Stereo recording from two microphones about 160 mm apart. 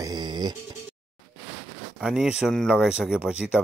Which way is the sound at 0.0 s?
25° right (ahead or behind).